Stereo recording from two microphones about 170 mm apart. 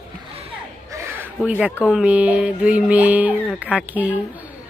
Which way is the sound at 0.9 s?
15° right (ahead or behind).